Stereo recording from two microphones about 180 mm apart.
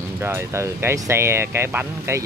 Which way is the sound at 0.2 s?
15° right (ahead or behind).